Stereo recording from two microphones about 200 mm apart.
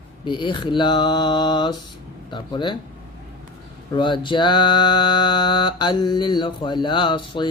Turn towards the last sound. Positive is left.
turn(degrees=25)  # may be behind; listen again after turning